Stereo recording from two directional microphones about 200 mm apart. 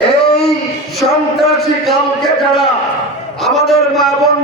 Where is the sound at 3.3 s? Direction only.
Centre (ahead or behind).